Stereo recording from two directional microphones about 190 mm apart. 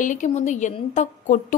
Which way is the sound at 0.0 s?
40° left (ahead or behind).